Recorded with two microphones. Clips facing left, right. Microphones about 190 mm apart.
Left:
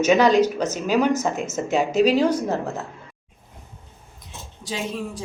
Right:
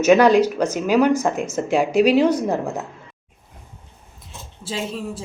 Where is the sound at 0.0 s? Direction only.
10° right (ahead or behind).